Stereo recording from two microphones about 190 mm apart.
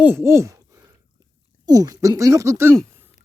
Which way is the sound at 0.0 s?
10° right (ahead or behind).